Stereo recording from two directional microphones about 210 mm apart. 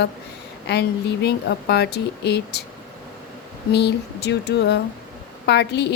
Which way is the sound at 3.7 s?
50° left (ahead or behind).